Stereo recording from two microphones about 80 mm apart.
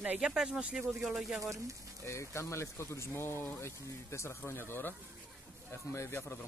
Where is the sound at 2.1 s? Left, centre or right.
Left.